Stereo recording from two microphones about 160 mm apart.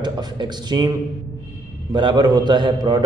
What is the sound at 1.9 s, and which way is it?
A man's voice, 30° right (ahead or behind).